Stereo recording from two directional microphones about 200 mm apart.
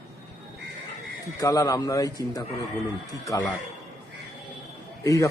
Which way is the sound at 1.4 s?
15° left (ahead or behind).